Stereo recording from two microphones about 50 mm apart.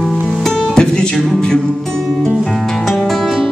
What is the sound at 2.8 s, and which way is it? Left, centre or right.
Music, centre.